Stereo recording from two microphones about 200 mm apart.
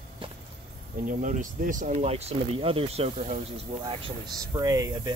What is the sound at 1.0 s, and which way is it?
Speech, 40° right (ahead or behind).